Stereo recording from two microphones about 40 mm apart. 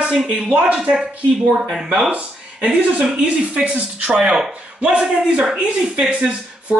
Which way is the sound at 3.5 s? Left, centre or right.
Right.